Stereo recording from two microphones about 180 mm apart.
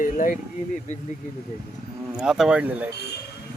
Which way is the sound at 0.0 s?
45° left (ahead or behind).